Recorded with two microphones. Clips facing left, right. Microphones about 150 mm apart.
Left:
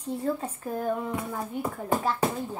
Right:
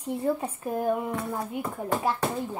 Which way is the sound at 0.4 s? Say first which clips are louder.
Right 2 dB; 15° right (ahead or behind).